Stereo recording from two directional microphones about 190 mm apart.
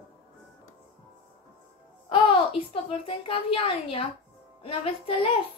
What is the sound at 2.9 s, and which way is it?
A woman's voice, 30° left (ahead or behind).